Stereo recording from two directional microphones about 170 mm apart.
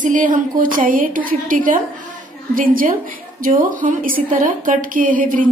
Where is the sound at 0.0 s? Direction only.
50° right (ahead or behind).